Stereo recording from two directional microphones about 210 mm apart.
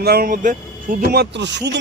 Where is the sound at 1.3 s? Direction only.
55° right (ahead or behind).